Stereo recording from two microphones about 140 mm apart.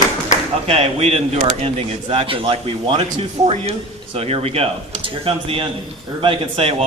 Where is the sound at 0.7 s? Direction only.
50° right (ahead or behind).